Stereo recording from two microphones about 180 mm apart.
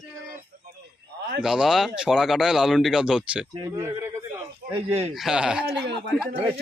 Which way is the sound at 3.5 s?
20° right (ahead or behind).